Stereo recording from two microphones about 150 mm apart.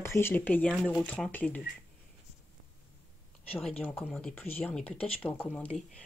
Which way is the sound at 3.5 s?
5° left (ahead or behind).